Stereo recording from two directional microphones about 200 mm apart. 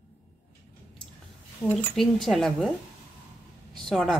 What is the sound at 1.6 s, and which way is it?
Speech, 10° left (ahead or behind).